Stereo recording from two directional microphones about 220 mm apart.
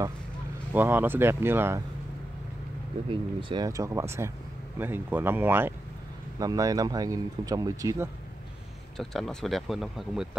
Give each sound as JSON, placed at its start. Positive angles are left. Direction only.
{"t": 0.7, "sound": "speech", "side_deg": -10}
{"t": 3.1, "sound": "speech", "side_deg": -25}
{"t": 8.9, "sound": "speech", "side_deg": 0}